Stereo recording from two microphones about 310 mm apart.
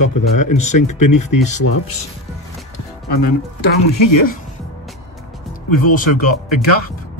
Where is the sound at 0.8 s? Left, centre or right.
Left.